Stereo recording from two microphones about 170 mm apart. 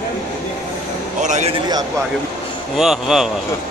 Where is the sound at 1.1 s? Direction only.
45° right (ahead or behind).